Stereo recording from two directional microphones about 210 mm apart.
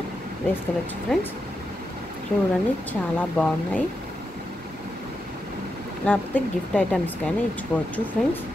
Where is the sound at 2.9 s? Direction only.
10° left (ahead or behind).